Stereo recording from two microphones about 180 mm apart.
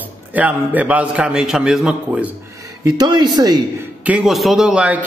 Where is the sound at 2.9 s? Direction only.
20° right (ahead or behind).